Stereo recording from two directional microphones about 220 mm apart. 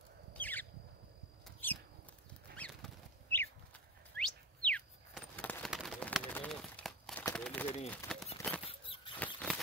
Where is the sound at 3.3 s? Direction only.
10° left (ahead or behind).